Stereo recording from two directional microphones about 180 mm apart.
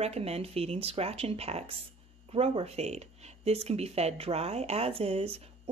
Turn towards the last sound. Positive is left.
turn(degrees=-35)  # may be behind; listen again after turning